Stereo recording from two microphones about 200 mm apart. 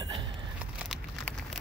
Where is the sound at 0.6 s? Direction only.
5° right (ahead or behind).